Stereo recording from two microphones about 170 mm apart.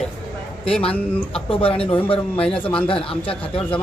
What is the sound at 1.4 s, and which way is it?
Speech, 35° left (ahead or behind).